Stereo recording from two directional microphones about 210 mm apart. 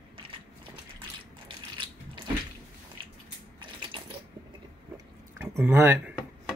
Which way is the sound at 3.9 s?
25° right (ahead or behind).